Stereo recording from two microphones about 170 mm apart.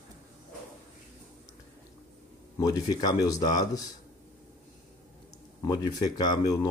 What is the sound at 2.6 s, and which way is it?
Speech, 20° left (ahead or behind).